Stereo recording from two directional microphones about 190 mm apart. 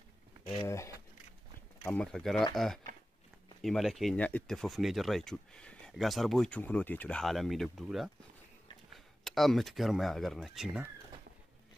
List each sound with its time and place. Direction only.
0.7 s speech: 15° left (ahead or behind); by 10.9 s 5° right (ahead or behind)